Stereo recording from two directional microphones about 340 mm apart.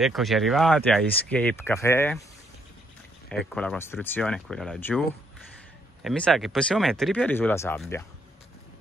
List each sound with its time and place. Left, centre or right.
0.0 s speech: centre
3.3 s speech: centre
6.0 s speech: centre